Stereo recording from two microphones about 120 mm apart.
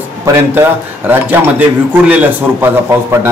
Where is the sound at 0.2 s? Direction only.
20° right (ahead or behind).